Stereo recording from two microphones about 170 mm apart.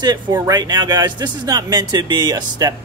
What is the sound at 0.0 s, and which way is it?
Speech, 25° right (ahead or behind).